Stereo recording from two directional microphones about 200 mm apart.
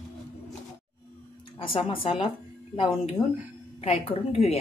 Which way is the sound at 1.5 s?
25° left (ahead or behind).